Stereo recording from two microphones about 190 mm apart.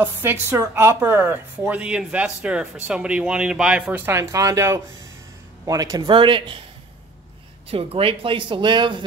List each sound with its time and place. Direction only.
0.0 s a woman's voice: 10° right (ahead or behind)
7.7 s speech: 30° right (ahead or behind)